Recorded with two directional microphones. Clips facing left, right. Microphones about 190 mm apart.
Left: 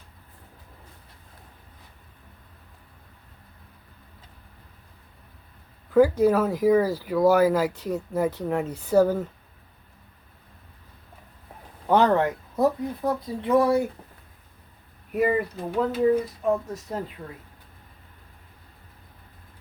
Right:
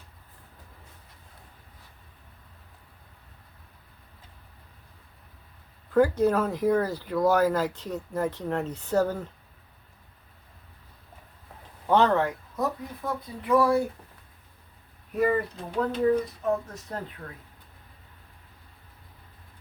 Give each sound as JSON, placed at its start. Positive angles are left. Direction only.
{"t": 5.9, "sound": "speech", "side_deg": 10}
{"t": 11.9, "sound": "speech", "side_deg": 10}
{"t": 12.5, "sound": "speech", "side_deg": 30}
{"t": 15.1, "sound": "speech", "side_deg": 10}